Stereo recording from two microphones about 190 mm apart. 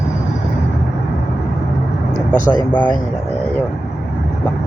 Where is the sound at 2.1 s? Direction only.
40° left (ahead or behind).